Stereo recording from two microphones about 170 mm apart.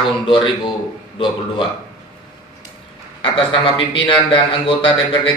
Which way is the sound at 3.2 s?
30° left (ahead or behind).